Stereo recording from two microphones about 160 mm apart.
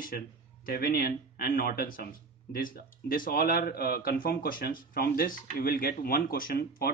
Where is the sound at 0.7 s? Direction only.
75° left (ahead or behind).